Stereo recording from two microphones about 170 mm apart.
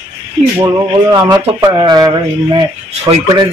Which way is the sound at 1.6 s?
25° right (ahead or behind).